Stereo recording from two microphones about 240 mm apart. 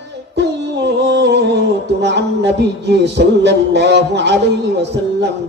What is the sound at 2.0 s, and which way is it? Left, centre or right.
A man's voice, right.